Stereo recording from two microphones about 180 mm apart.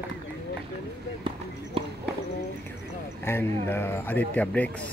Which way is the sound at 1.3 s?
30° right (ahead or behind).